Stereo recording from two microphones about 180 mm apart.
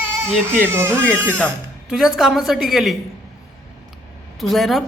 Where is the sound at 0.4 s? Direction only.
10° right (ahead or behind).